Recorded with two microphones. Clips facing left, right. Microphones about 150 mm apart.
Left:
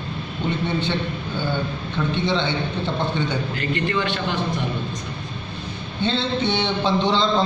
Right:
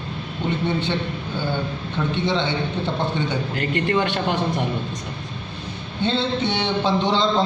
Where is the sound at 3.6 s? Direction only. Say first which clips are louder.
Right 4 dB; 55° right (ahead or behind).